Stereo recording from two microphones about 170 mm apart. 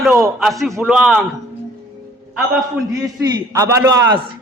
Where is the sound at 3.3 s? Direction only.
20° right (ahead or behind).